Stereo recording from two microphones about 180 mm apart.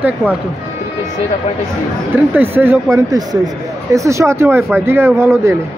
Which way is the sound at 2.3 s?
10° right (ahead or behind).